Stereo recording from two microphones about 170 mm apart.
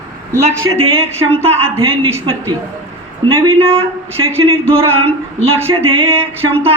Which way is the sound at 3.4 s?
35° right (ahead or behind).